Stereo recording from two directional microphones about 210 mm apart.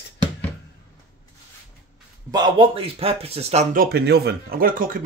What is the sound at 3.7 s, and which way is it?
Speech, 50° right (ahead or behind).